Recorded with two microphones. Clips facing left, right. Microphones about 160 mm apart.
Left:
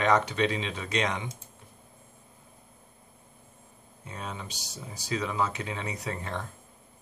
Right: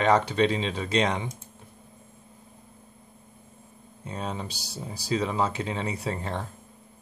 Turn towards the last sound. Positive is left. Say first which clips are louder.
# right 4 dB
turn(degrees=-30)  # may be behind; listen again after turning